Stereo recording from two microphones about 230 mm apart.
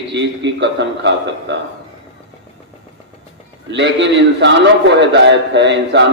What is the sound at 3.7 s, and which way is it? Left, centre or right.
A man's voice, right.